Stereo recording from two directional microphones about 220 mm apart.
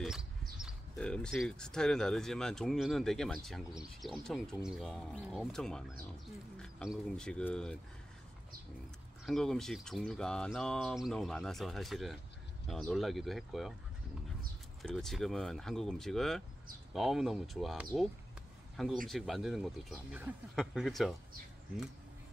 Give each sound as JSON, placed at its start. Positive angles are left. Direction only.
{"t": 0.6, "sound": "speech", "side_deg": 0}
{"t": 9.2, "sound": "speech", "side_deg": 0}
{"t": 14.8, "sound": "speech", "side_deg": 0}
{"t": 19.0, "sound": "speech", "side_deg": 0}